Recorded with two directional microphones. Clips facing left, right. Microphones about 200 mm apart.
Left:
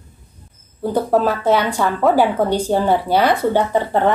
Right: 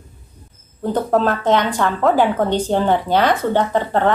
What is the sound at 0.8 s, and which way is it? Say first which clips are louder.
A woman's voice: left 1 dB; 10° left (ahead or behind).